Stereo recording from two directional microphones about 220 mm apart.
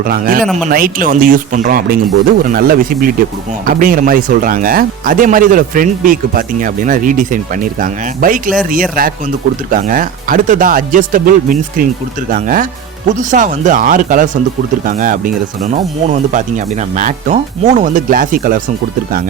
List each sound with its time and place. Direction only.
0.0 s speech: 40° right (ahead or behind)